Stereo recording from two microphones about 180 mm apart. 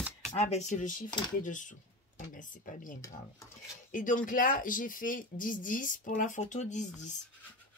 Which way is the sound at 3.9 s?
45° left (ahead or behind).